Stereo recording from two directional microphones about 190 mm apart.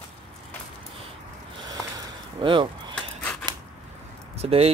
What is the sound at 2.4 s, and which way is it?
Speech, 25° right (ahead or behind).